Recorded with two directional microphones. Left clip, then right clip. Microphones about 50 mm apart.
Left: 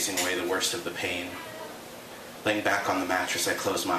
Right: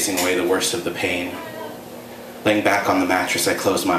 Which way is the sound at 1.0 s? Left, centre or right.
Left.